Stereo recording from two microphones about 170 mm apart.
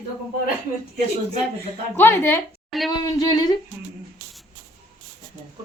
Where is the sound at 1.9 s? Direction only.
15° left (ahead or behind).